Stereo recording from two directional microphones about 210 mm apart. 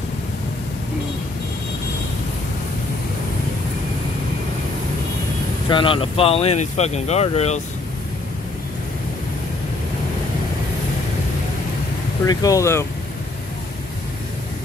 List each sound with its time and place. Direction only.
5.7 s speech: 25° left (ahead or behind)
12.3 s speech: 15° left (ahead or behind)